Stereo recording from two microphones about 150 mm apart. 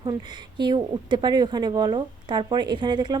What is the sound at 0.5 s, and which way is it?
Speech, 30° right (ahead or behind).